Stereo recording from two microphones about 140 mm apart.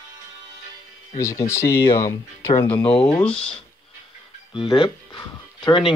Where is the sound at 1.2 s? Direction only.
20° left (ahead or behind).